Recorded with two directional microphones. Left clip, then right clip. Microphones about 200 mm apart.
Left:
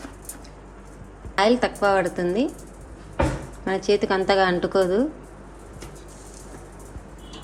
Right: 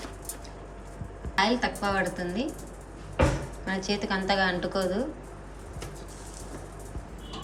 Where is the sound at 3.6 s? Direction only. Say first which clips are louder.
Left 10 dB; 35° left (ahead or behind).